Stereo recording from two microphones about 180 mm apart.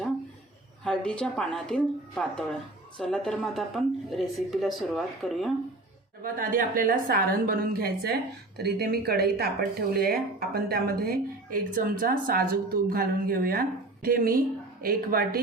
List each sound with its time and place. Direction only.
0.9 s a woman's voice: 5° left (ahead or behind)
6.2 s a woman's voice: 50° right (ahead or behind)